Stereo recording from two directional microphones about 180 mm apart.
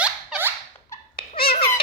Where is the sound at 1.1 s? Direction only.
55° left (ahead or behind).